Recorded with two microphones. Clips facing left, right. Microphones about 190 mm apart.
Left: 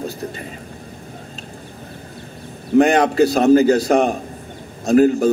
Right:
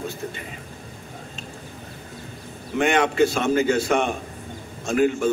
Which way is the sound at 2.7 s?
35° left (ahead or behind).